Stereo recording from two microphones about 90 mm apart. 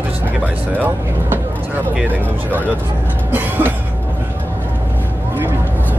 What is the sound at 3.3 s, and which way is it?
Train, 20° right (ahead or behind).